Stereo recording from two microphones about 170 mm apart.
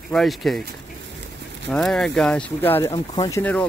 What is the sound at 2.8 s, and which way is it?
Speech, 25° left (ahead or behind).